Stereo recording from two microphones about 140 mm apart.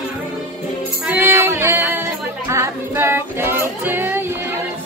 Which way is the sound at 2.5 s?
20° right (ahead or behind).